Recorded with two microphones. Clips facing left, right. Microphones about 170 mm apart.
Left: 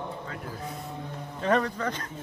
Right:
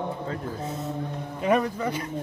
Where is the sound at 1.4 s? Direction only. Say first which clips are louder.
Right 2 dB; 10° right (ahead or behind).